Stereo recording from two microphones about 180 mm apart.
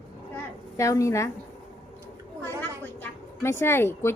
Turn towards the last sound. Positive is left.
turn(degrees=15)  # may be behind; listen again after turning